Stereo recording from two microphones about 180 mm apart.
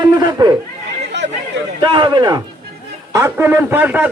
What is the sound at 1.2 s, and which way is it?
Chatter, 75° right (ahead or behind).